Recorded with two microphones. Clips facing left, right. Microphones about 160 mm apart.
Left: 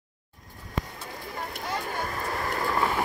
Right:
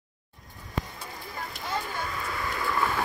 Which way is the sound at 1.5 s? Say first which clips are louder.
Even; 50° left (ahead or behind).